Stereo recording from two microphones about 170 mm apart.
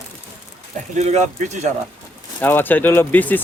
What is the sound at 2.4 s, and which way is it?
Speech, 10° left (ahead or behind).